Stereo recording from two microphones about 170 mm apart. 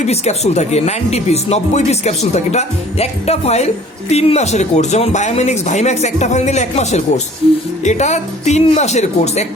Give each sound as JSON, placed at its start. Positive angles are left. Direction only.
{"t": 0.1, "sound": "speech", "side_deg": 40}